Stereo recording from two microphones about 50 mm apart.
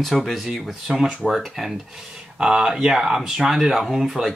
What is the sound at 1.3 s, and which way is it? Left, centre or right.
Speech, centre.